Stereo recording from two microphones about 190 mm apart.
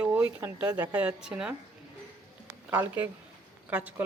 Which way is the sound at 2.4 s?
10° right (ahead or behind).